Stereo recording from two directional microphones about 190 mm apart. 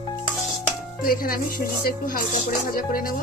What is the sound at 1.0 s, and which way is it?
Music, 50° left (ahead or behind).